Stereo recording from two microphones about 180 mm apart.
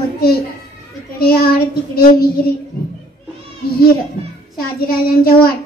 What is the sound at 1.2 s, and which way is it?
A woman's voice, 60° left (ahead or behind).